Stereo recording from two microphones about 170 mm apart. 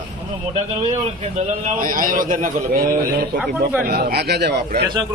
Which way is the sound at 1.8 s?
55° right (ahead or behind).